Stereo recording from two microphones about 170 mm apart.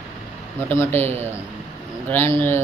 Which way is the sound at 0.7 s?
15° left (ahead or behind).